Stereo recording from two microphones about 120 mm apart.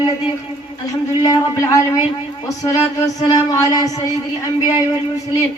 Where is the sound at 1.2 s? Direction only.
25° left (ahead or behind).